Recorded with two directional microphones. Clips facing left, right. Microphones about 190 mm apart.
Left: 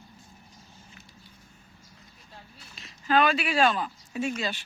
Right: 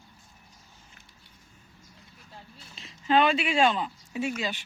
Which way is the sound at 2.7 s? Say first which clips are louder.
Right 1 dB; 25° right (ahead or behind).